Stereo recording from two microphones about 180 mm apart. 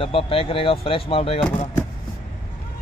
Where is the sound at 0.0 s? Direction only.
30° left (ahead or behind).